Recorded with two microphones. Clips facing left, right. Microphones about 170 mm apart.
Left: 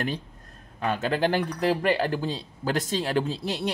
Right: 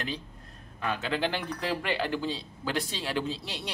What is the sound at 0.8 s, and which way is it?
Speech, 45° left (ahead or behind).